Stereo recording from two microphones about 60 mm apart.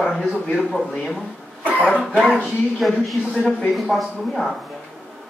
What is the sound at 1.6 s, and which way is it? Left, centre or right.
Cough, left.